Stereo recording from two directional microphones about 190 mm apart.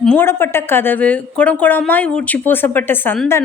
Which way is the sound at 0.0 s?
10° left (ahead or behind).